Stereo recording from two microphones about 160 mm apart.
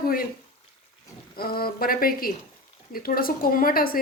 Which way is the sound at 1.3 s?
70° left (ahead or behind).